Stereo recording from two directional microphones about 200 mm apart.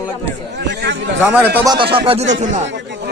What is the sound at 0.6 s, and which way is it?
Speech, 60° right (ahead or behind).